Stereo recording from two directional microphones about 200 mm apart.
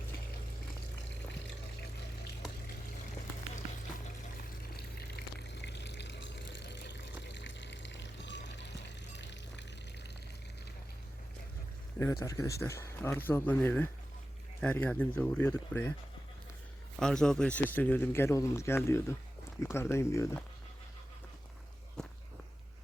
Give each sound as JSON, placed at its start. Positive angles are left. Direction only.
{"t": 4.8, "sound": "water", "side_deg": 50}
{"t": 11.9, "sound": "speech", "side_deg": 15}
{"t": 17.0, "sound": "speech", "side_deg": 5}
{"t": 22.0, "sound": "walk", "side_deg": 5}